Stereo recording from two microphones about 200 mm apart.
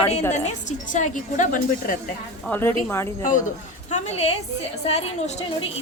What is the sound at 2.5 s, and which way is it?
Speech, 10° left (ahead or behind).